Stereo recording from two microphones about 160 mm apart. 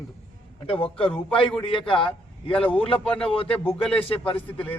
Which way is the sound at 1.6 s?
35° left (ahead or behind).